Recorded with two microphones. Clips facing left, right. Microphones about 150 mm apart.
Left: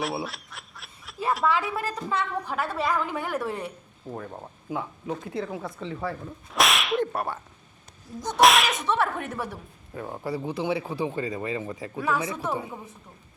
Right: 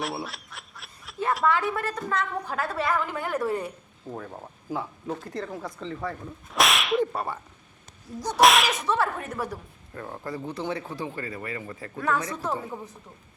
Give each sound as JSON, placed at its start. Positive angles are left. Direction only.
{"t": 0.0, "sound": "speech", "side_deg": 0}